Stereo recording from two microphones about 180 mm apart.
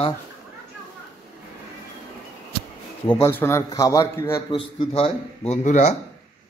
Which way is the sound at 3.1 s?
15° left (ahead or behind).